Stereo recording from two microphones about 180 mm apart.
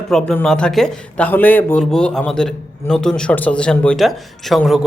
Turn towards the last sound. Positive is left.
turn(degrees=0)  # may be behind; listen again after turning